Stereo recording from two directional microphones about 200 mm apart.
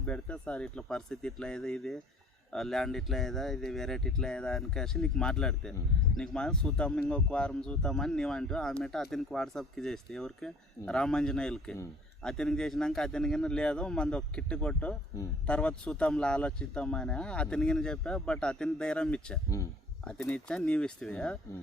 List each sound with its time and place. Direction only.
0.0 s speech: 5° left (ahead or behind)
15.4 s speech: 5° left (ahead or behind)